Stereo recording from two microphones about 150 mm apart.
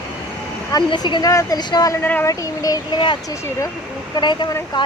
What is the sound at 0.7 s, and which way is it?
Speech, 30° left (ahead or behind).